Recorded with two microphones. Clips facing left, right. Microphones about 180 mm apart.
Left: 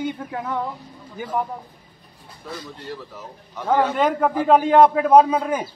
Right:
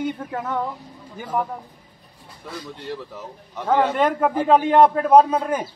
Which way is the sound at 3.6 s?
5° left (ahead or behind).